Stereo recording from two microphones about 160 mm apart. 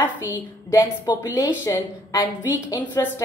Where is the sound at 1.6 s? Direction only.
20° left (ahead or behind).